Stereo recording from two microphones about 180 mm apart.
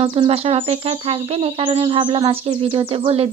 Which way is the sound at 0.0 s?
35° right (ahead or behind).